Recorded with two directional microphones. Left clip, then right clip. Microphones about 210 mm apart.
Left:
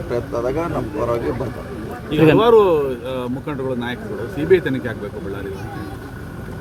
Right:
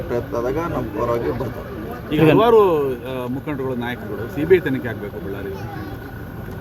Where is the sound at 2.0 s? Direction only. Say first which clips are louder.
Left 1 dB; 10° right (ahead or behind).